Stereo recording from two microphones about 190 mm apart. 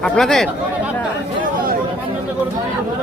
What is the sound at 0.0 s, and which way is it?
Speech, centre (ahead or behind).